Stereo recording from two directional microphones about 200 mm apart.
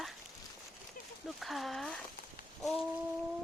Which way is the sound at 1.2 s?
Centre (ahead or behind).